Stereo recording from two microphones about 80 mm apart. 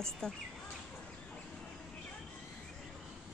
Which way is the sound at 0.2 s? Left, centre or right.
Centre.